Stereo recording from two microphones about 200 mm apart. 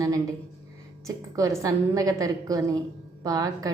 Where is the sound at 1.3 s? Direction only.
15° right (ahead or behind).